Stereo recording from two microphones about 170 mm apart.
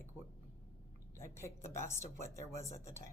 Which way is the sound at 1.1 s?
15° left (ahead or behind).